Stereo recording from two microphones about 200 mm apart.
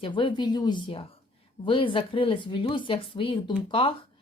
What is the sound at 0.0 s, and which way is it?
Speech, 25° left (ahead or behind).